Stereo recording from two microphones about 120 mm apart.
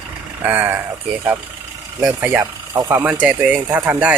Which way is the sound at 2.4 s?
25° right (ahead or behind).